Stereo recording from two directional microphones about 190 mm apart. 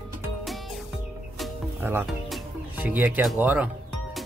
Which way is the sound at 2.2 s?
5° right (ahead or behind).